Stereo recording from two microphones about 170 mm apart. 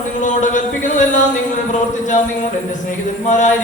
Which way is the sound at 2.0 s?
45° left (ahead or behind).